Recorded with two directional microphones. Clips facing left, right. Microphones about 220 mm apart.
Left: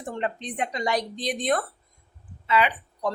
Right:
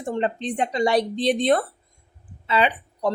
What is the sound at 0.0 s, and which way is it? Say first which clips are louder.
Speech: right 5 dB; 25° right (ahead or behind).